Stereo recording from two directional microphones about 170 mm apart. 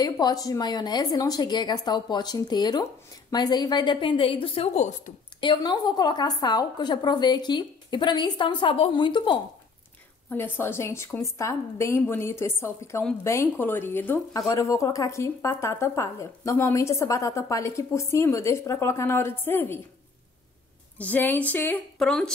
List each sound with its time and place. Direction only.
0.0 s a woman's voice: 25° left (ahead or behind); by 5.1 s 45° left (ahead or behind)
5.4 s a woman's voice: 25° left (ahead or behind)
10.3 s speech: 15° left (ahead or behind)
21.0 s speech: 10° left (ahead or behind)